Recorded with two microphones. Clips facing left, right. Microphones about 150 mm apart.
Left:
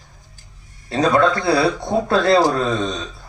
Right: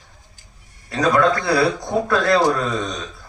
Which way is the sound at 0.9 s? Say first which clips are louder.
Left 1 dB; 25° left (ahead or behind).